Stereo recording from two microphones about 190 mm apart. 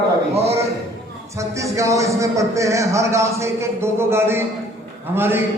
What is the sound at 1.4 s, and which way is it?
Speech, 15° right (ahead or behind).